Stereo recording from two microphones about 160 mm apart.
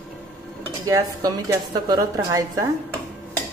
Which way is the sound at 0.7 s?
20° right (ahead or behind).